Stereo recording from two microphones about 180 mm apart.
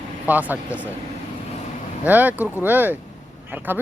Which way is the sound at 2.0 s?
10° right (ahead or behind).